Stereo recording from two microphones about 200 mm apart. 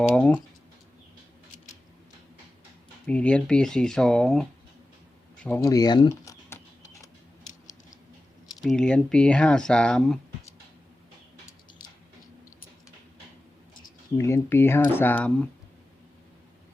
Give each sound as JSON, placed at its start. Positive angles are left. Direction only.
{"t": 0.1, "sound": "speech", "side_deg": 5}
{"t": 3.1, "sound": "speech", "side_deg": 5}
{"t": 5.5, "sound": "a sound", "side_deg": 15}
{"t": 8.6, "sound": "speech", "side_deg": 5}
{"t": 14.2, "sound": "speech", "side_deg": 15}